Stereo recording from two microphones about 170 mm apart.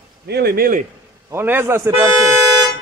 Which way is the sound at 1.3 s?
15° right (ahead or behind).